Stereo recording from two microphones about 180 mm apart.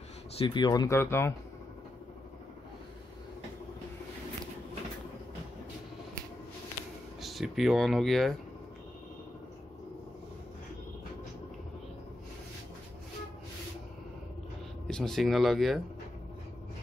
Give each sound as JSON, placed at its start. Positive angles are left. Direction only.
{"t": 0.4, "sound": "speech", "side_deg": 25}
{"t": 7.2, "sound": "speech", "side_deg": 0}
{"t": 14.9, "sound": "speech", "side_deg": 5}